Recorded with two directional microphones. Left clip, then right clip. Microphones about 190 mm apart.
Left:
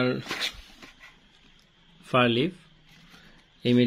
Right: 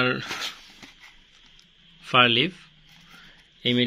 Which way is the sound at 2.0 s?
20° left (ahead or behind).